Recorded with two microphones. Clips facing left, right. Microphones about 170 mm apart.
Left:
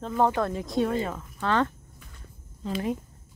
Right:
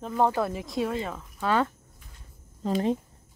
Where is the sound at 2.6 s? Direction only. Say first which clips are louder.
Right 4 dB; 40° right (ahead or behind).